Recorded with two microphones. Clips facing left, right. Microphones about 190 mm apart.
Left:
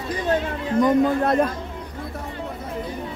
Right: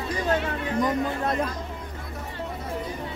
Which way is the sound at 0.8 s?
60° left (ahead or behind).